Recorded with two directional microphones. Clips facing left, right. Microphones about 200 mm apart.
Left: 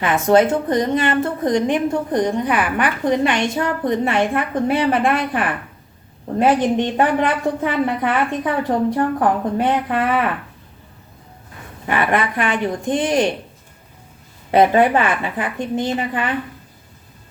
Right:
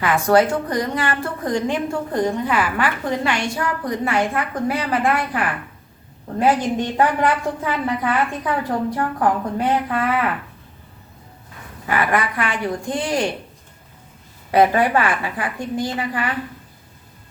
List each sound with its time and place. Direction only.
0.0 s a woman's voice: 20° left (ahead or behind)
11.9 s a woman's voice: 25° left (ahead or behind)
14.5 s a woman's voice: 25° left (ahead or behind)